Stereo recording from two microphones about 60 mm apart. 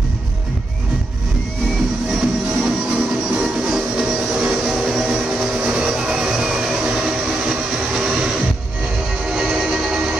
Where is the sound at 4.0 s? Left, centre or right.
Centre.